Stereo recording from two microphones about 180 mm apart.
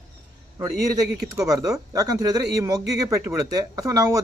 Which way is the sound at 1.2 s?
20° right (ahead or behind).